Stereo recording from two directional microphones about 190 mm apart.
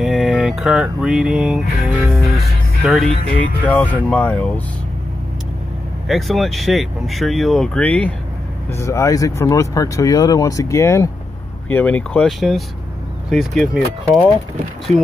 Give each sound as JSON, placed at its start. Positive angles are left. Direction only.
{"t": 0.0, "sound": "music", "side_deg": 0}
{"t": 3.6, "sound": "speech", "side_deg": 10}
{"t": 6.0, "sound": "speech", "side_deg": 0}